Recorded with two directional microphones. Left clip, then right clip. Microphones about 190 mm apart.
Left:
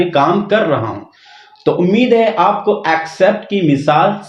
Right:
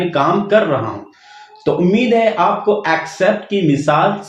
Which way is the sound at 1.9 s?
45° left (ahead or behind).